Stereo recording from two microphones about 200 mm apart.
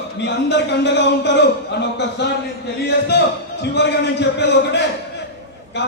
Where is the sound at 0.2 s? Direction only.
60° left (ahead or behind).